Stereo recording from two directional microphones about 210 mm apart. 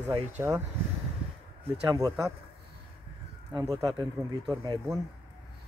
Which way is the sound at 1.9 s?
15° right (ahead or behind).